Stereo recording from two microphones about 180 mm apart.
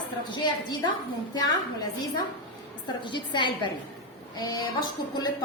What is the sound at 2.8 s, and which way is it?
A woman's voice, 25° left (ahead or behind).